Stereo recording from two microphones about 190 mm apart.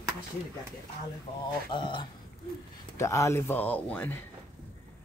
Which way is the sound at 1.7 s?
25° left (ahead or behind).